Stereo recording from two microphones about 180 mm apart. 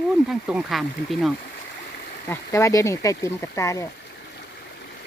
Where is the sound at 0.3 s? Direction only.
5° right (ahead or behind).